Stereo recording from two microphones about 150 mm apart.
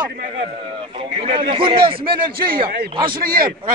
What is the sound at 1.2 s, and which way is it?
Speech, 40° right (ahead or behind).